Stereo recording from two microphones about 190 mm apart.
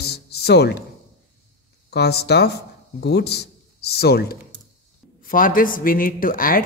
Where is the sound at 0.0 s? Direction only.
60° left (ahead or behind).